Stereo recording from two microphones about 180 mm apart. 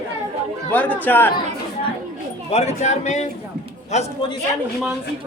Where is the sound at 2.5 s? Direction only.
40° left (ahead or behind).